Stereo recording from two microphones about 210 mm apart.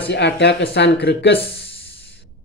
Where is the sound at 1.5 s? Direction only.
55° left (ahead or behind).